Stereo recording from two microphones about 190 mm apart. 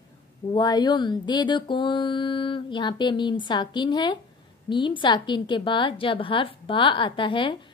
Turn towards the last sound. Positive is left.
turn(degrees=25)  # may be behind; listen again after turning